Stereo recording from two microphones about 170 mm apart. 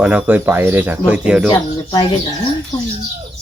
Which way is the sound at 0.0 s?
5° right (ahead or behind).